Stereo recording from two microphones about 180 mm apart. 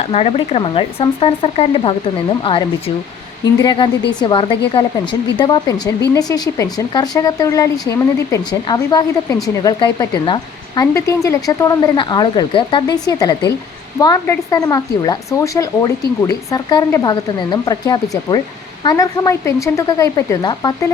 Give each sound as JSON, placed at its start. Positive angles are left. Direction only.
{"t": 0.1, "sound": "speech", "side_deg": 35}